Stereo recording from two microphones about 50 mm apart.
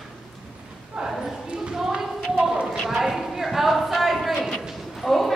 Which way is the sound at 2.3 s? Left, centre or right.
Centre.